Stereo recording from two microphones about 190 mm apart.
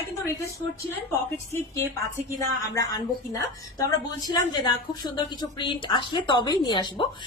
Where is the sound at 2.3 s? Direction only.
15° left (ahead or behind).